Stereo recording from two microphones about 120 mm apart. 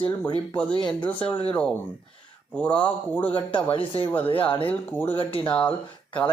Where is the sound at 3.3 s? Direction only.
45° left (ahead or behind).